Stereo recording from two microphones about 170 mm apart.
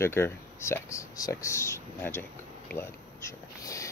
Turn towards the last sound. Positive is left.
turn(degrees=20)  # may be behind; listen again after turning